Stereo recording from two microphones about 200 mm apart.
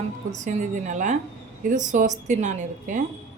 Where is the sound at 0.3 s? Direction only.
40° right (ahead or behind).